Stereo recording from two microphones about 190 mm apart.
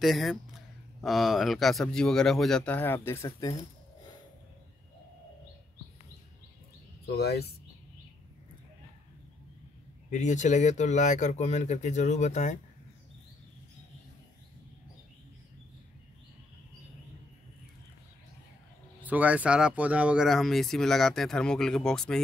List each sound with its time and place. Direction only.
0.0 s speech: centre (ahead or behind); by 3.5 s 20° left (ahead or behind)
7.2 s speech: 60° left (ahead or behind)
10.1 s speech: 40° left (ahead or behind)
19.0 s speech: 5° right (ahead or behind)